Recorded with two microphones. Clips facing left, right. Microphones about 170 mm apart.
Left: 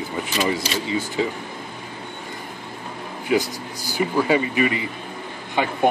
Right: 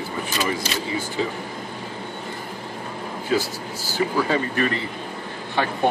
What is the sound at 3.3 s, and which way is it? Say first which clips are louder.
Speech: left 2 dB; 15° left (ahead or behind).